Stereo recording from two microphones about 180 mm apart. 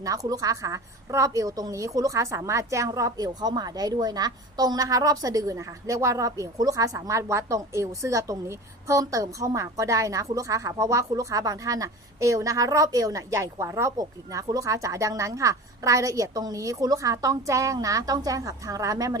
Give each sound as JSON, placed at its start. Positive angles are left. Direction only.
{"t": 0.0, "sound": "a woman's voice", "side_deg": -20}